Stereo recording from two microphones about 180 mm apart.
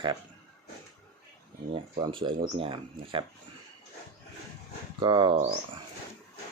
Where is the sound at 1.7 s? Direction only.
30° right (ahead or behind).